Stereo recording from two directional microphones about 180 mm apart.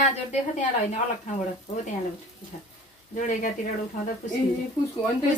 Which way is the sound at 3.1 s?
45° left (ahead or behind).